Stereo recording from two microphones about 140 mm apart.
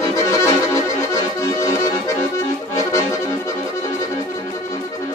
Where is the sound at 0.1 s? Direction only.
20° left (ahead or behind).